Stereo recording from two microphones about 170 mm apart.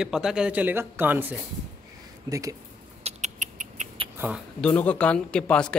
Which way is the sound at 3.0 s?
45° right (ahead or behind).